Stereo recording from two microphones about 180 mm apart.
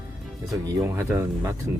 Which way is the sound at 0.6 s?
15° right (ahead or behind).